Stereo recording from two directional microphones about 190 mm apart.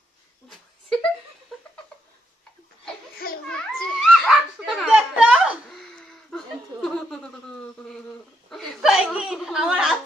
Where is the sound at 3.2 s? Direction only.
50° left (ahead or behind).